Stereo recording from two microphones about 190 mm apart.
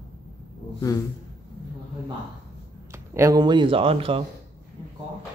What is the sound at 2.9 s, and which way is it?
Speech, 15° right (ahead or behind).